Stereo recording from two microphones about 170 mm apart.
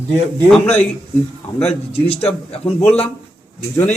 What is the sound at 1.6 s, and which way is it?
Speech, 35° left (ahead or behind).